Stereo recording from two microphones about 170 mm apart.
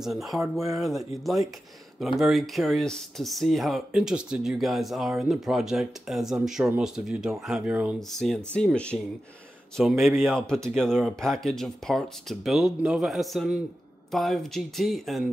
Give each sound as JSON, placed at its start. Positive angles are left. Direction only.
{"t": 0.0, "sound": "speech", "side_deg": 0}
{"t": 0.4, "sound": "speech", "side_deg": -15}
{"t": 0.7, "sound": "speech", "side_deg": 0}